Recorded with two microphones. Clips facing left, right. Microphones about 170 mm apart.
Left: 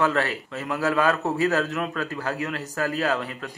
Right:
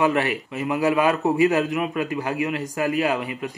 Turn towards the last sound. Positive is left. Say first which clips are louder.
# right 3 dB
turn(degrees=-15)  # may be behind; listen again after turning